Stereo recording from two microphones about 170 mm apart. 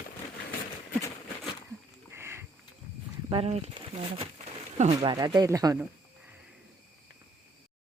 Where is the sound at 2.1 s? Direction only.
15° right (ahead or behind).